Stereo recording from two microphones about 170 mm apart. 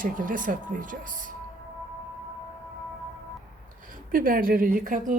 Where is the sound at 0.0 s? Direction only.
50° right (ahead or behind).